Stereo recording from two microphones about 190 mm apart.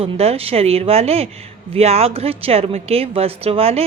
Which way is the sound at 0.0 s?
30° right (ahead or behind).